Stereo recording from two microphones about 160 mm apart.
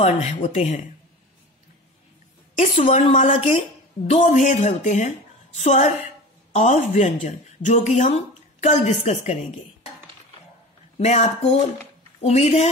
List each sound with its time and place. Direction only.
0.0 s a woman's voice: 45° left (ahead or behind)
2.6 s a woman's voice: 40° left (ahead or behind)
11.0 s a woman's voice: 45° left (ahead or behind)